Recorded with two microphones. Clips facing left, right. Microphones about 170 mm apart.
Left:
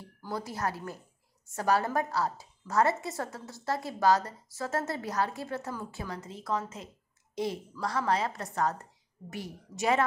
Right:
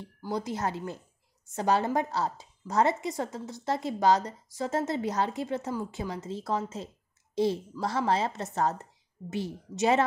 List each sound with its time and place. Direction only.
0.2 s a woman's voice: 20° right (ahead or behind)